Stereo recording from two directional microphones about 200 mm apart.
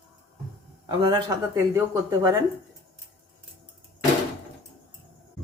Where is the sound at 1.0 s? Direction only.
25° right (ahead or behind).